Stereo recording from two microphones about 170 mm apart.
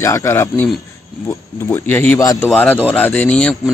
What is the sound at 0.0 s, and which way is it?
Speech, 15° left (ahead or behind).